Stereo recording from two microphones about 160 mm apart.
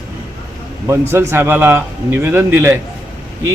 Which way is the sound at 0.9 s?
15° right (ahead or behind).